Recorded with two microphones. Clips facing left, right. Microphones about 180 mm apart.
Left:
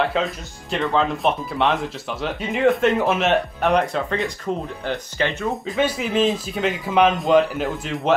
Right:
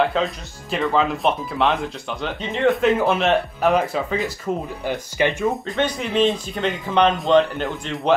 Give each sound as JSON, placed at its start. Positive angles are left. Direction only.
{"t": 0.0, "sound": "speech", "side_deg": 0}